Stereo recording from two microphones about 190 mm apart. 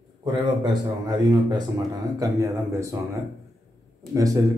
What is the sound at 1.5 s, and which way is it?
Speech, 20° right (ahead or behind).